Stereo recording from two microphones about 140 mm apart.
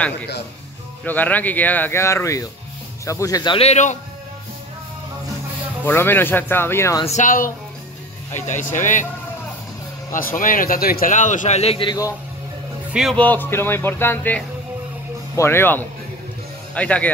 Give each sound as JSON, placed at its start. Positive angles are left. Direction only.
{"t": 1.0, "sound": "speech", "side_deg": 10}
{"t": 3.5, "sound": "speech", "side_deg": 55}
{"t": 5.9, "sound": "speech", "side_deg": 15}
{"t": 7.1, "sound": "a man's voice", "side_deg": 65}
{"t": 8.3, "sound": "speech", "side_deg": 60}
{"t": 10.1, "sound": "a man's voice", "side_deg": 75}
{"t": 13.1, "sound": "speech", "side_deg": 10}